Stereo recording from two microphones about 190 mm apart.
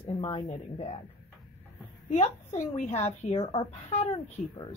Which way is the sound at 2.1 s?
35° left (ahead or behind).